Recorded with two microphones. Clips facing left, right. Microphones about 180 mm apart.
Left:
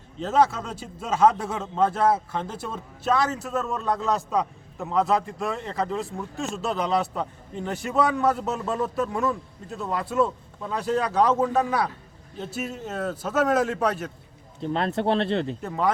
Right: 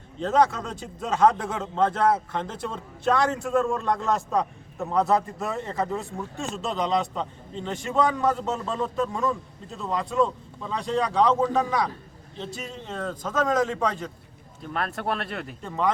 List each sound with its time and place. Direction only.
0.2 s a man's voice: 5° left (ahead or behind)
14.6 s speech: 25° left (ahead or behind)
15.6 s a man's voice: 10° left (ahead or behind)